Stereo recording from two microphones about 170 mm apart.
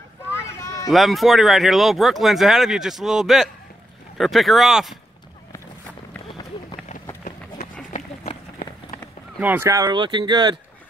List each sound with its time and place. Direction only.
0.4 s a sound: 20° left (ahead or behind)
0.8 s speech: centre (ahead or behind)
7.9 s run: 40° left (ahead or behind)
9.4 s speech: 10° right (ahead or behind)